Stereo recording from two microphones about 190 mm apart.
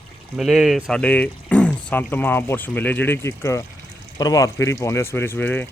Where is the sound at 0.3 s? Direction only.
Centre (ahead or behind).